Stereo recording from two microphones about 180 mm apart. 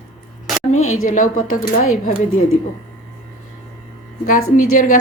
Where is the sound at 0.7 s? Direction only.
45° left (ahead or behind).